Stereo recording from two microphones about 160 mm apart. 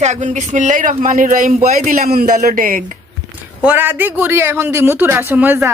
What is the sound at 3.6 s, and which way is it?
A man's voice, 10° right (ahead or behind).